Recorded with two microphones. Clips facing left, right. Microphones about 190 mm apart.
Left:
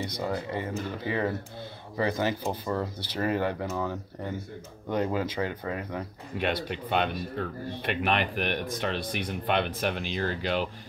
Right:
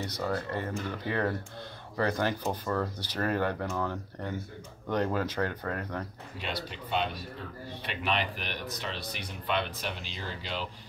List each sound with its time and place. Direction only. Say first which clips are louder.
0.2 s speech: even; 15° left (ahead or behind)
6.3 s speech: left 8 dB; 60° left (ahead or behind)